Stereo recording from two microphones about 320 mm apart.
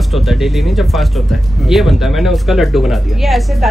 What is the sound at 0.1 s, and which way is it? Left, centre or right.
Speech, centre.